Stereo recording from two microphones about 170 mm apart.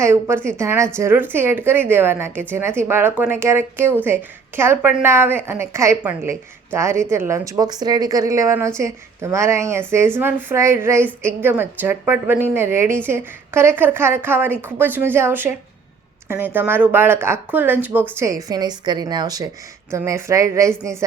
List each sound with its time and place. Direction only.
0.0 s a woman's voice: 15° right (ahead or behind)